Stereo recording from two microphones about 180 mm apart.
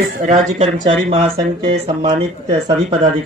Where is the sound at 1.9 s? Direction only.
30° right (ahead or behind).